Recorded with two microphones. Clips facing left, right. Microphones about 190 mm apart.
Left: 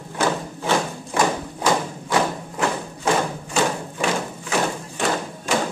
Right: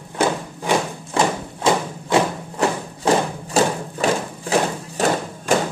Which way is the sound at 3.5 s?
35° right (ahead or behind).